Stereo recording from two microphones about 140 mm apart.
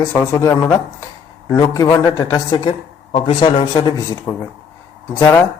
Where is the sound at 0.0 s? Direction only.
15° left (ahead or behind).